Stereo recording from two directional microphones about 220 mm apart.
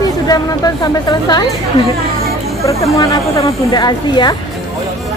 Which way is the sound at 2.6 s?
15° left (ahead or behind).